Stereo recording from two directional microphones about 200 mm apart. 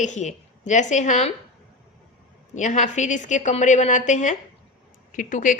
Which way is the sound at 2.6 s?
40° left (ahead or behind).